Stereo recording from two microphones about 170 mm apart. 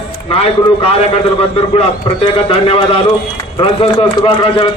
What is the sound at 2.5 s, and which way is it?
A man's voice, 35° left (ahead or behind).